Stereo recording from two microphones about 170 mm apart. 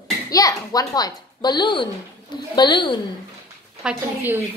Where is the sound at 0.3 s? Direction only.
20° left (ahead or behind).